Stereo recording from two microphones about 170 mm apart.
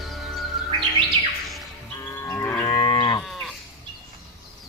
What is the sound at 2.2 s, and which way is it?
Livestock, 15° left (ahead or behind).